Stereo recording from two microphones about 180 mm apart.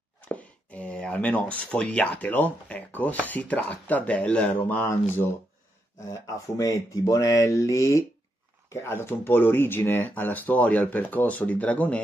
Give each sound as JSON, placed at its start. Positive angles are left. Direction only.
{"t": 0.2, "sound": "speech", "side_deg": 5}
{"t": 6.4, "sound": "speech", "side_deg": 20}